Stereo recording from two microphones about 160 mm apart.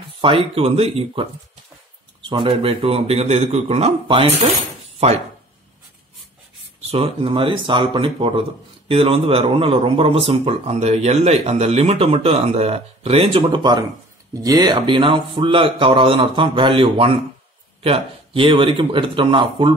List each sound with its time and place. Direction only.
0.0 s speech: 35° right (ahead or behind)
2.2 s speech: 35° right (ahead or behind)
6.9 s speech: 35° right (ahead or behind)